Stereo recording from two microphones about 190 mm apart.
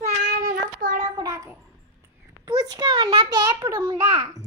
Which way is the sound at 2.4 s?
20° right (ahead or behind).